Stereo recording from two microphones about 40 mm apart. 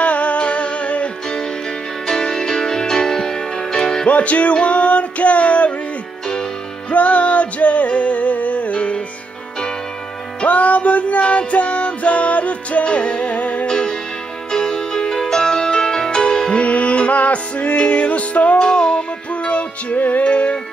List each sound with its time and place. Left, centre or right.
0.0 s music: left
2.0 s music: centre
4.1 s music: left
6.9 s music: left
10.4 s music: left
13.7 s music: centre; by 18.6 s left
18.6 s music: left
20.2 s carnatic music: left